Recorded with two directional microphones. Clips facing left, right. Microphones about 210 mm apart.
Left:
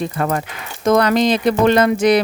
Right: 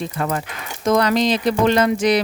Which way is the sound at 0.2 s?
50° left (ahead or behind).